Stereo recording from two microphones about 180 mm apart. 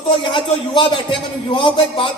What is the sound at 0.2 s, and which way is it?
A man's voice, 25° left (ahead or behind).